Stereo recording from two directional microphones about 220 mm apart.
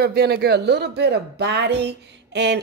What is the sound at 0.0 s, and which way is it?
Speech, 45° right (ahead or behind).